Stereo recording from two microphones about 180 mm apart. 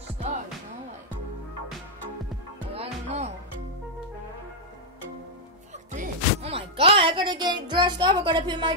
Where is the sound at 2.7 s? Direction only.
35° right (ahead or behind).